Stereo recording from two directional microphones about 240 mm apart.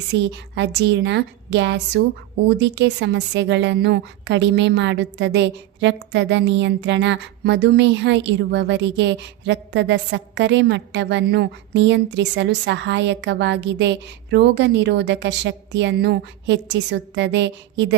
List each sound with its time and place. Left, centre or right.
0.1 s a woman's voice: right